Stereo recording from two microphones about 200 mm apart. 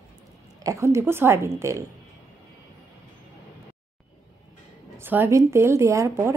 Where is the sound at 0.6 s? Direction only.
15° right (ahead or behind).